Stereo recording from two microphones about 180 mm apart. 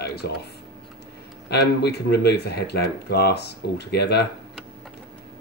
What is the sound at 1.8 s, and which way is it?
Speech, 65° left (ahead or behind).